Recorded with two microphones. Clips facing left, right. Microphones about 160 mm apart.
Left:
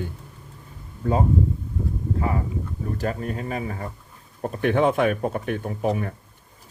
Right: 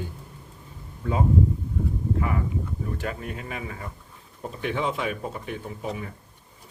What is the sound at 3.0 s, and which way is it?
Speech, 40° left (ahead or behind).